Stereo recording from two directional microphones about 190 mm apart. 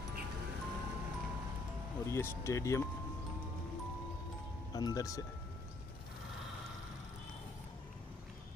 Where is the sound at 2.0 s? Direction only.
15° left (ahead or behind).